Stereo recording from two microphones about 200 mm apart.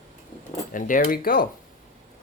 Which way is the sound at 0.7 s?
40° left (ahead or behind).